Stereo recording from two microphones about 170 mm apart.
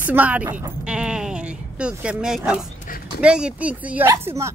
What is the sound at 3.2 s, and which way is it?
Speech, 5° right (ahead or behind).